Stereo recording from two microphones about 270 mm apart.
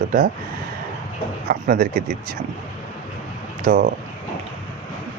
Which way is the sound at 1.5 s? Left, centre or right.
Right.